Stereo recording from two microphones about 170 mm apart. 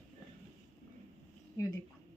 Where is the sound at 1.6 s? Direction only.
20° left (ahead or behind).